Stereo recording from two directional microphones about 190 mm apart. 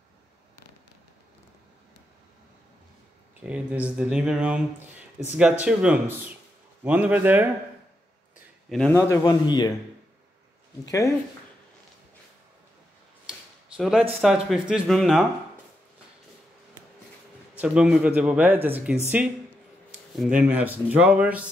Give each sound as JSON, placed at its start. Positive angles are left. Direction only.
{"t": 3.4, "sound": "speech", "side_deg": -5}
{"t": 8.6, "sound": "speech", "side_deg": 0}
{"t": 8.9, "sound": "a man's voice", "side_deg": 15}
{"t": 13.3, "sound": "a sound", "side_deg": 0}
{"t": 14.2, "sound": "speech", "side_deg": 0}
{"t": 17.6, "sound": "speech", "side_deg": -5}